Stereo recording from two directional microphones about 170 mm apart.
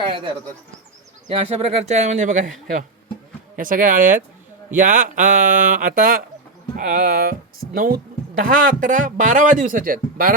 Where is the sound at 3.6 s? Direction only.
50° right (ahead or behind).